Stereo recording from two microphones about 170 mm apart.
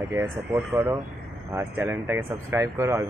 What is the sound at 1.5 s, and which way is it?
Speech, 15° right (ahead or behind).